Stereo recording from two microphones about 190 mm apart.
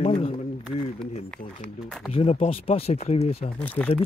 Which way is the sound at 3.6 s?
10° left (ahead or behind).